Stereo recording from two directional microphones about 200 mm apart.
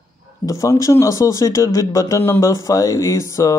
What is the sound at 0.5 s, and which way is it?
Speech, 15° left (ahead or behind).